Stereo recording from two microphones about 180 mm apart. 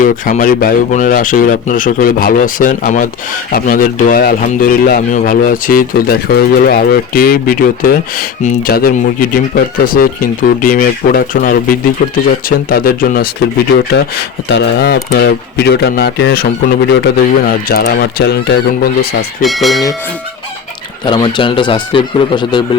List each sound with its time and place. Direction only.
0.0 s speech: 50° left (ahead or behind)
13.7 s speech: 70° left (ahead or behind)
19.4 s speech: centre (ahead or behind)
21.0 s speech: 25° left (ahead or behind)